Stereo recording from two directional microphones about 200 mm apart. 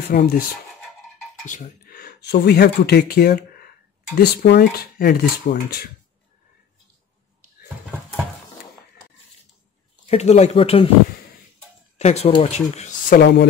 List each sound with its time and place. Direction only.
0.1 s speech: 50° left (ahead or behind)
1.4 s speech: 40° left (ahead or behind)
10.0 s speech: 30° left (ahead or behind)
12.0 s speech: 30° left (ahead or behind)
13.1 s speech: 55° left (ahead or behind)